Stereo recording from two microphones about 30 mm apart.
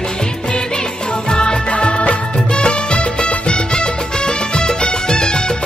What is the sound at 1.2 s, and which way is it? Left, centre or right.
Music, left.